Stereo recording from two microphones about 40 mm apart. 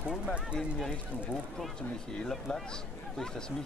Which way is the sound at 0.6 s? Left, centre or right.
Centre.